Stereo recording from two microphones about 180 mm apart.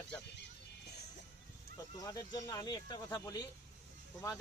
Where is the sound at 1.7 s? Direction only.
20° left (ahead or behind).